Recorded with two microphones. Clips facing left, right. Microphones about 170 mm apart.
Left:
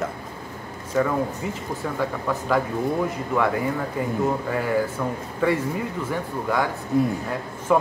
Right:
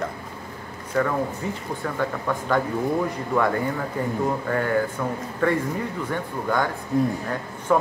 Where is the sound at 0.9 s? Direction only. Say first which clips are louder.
Left 1 dB; 15° left (ahead or behind).